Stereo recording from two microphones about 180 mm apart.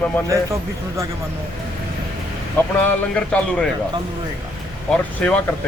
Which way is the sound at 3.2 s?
5° left (ahead or behind).